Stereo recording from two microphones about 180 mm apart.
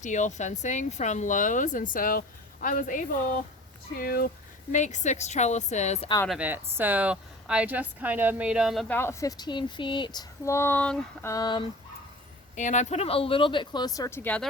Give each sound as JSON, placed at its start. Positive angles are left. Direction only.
{"t": 0.0, "sound": "speech", "side_deg": 45}
{"t": 4.7, "sound": "a woman's voice", "side_deg": 40}
{"t": 6.2, "sound": "speech", "side_deg": -5}
{"t": 9.0, "sound": "speech", "side_deg": 15}
{"t": 12.5, "sound": "speech", "side_deg": 45}